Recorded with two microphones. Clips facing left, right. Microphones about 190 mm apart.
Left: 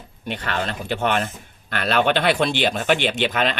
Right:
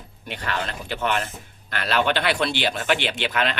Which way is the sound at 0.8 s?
50° left (ahead or behind).